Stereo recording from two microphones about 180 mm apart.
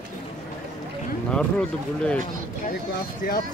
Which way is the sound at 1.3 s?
5° left (ahead or behind).